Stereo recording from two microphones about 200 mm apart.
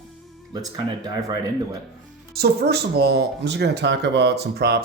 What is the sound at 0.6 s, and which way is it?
Speech, 20° right (ahead or behind).